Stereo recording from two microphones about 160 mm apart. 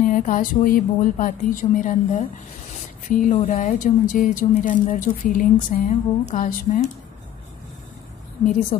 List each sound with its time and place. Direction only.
0.0 s speech: 55° left (ahead or behind)